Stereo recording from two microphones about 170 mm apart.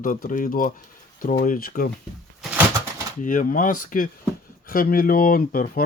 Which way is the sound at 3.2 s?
50° left (ahead or behind).